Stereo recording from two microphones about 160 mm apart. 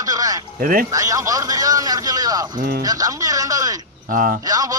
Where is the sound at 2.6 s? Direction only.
70° right (ahead or behind).